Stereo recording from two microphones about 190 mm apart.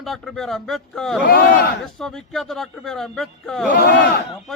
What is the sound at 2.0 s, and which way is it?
Speech, centre (ahead or behind).